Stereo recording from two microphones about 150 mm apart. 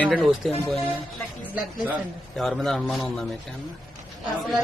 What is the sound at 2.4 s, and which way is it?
Speech, centre (ahead or behind).